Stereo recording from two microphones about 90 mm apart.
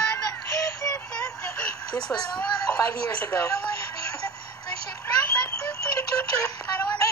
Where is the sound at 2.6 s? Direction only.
40° left (ahead or behind).